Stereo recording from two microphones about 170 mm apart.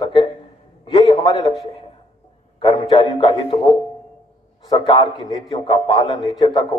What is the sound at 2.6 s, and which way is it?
A man's voice, 30° left (ahead or behind).